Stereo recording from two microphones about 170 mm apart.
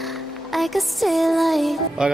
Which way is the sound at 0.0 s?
Centre (ahead or behind).